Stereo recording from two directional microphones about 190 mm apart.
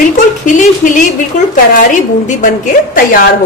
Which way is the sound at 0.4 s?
40° left (ahead or behind).